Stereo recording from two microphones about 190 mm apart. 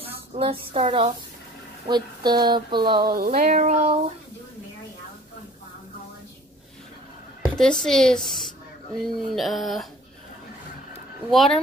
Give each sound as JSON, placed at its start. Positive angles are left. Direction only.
{"t": 0.0, "sound": "speech", "side_deg": -30}
{"t": 3.1, "sound": "a sound", "side_deg": -50}
{"t": 7.4, "sound": "a woman's voice", "side_deg": 0}
{"t": 11.2, "sound": "speech", "side_deg": 0}